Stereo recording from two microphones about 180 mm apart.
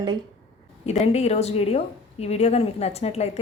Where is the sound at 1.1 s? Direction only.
35° left (ahead or behind).